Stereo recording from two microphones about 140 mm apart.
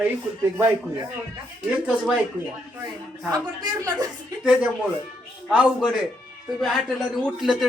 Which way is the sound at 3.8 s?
25° right (ahead or behind).